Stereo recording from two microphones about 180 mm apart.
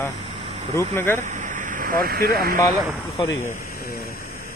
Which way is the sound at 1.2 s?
40° right (ahead or behind).